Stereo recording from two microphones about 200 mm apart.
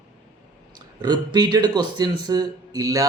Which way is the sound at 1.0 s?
20° right (ahead or behind).